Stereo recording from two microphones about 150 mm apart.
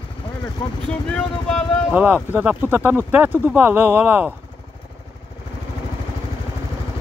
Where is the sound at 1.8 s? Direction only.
10° right (ahead or behind).